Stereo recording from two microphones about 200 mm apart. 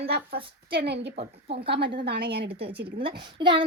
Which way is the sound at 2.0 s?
55° right (ahead or behind).